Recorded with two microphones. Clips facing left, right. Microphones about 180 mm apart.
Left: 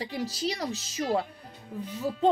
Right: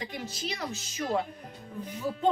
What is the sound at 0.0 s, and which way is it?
Speech, 35° left (ahead or behind).